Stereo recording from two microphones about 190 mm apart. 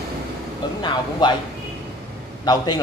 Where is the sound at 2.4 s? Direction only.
20° left (ahead or behind).